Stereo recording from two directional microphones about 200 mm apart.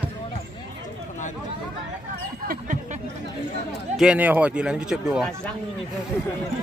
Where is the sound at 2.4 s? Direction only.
40° right (ahead or behind).